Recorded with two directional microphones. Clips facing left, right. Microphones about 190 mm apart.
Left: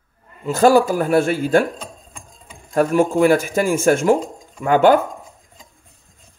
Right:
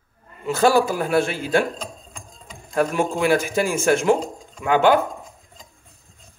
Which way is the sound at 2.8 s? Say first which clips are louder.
Left 5 dB; 45° left (ahead or behind).